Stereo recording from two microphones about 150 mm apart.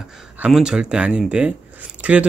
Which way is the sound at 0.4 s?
5° right (ahead or behind).